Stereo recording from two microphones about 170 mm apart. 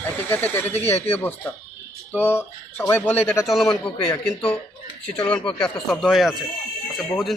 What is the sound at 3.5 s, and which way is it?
A man's voice, centre (ahead or behind).